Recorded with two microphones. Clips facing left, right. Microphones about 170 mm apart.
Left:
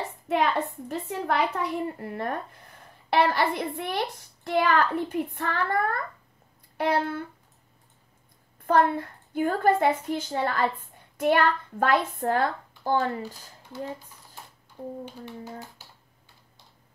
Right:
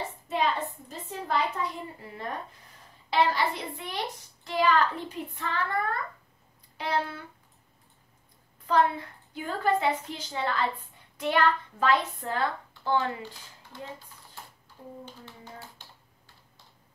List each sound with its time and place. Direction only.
0.3 s a woman's voice: 65° left (ahead or behind)
6.8 s a sound: 55° left (ahead or behind)
8.5 s a woman's voice: 50° left (ahead or behind)
15.0 s speech: 10° left (ahead or behind)